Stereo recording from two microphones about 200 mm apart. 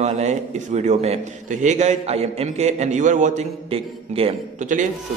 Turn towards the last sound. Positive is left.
turn(degrees=-40)  # may be behind; listen again after turning